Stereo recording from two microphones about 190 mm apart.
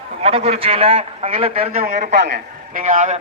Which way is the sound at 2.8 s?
40° right (ahead or behind).